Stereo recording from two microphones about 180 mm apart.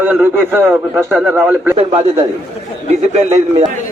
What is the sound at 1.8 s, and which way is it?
A man's voice, 35° right (ahead or behind).